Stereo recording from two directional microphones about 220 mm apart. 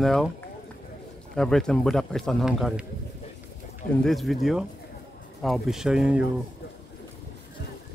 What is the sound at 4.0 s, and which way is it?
Speech, centre (ahead or behind).